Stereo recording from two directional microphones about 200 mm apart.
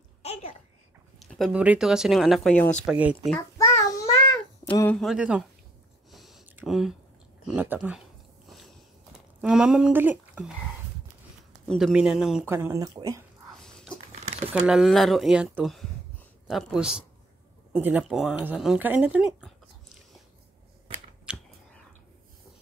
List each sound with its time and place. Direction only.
0.2 s babbling: 30° left (ahead or behind)
1.2 s speech: centre (ahead or behind)
3.3 s child singing: 10° left (ahead or behind)
4.9 s speech: centre (ahead or behind)
6.1 s a sound: centre (ahead or behind)
7.4 s speech: 10° right (ahead or behind)
9.4 s speech: 5° right (ahead or behind)
11.6 s speech: centre (ahead or behind)
12.4 s speech: 15° right (ahead or behind)
13.6 s dog: 5° left (ahead or behind)
14.5 s speech: centre (ahead or behind)
21.3 s chewing: 5° right (ahead or behind)